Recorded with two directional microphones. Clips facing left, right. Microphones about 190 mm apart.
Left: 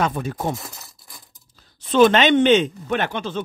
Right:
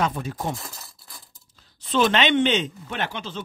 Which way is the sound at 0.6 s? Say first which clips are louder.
Left 1 dB; centre (ahead or behind).